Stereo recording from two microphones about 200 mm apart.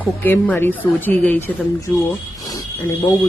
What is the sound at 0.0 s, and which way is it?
A woman's voice, 10° left (ahead or behind).